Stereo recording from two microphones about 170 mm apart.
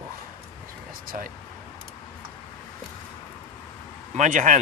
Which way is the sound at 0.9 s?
55° right (ahead or behind).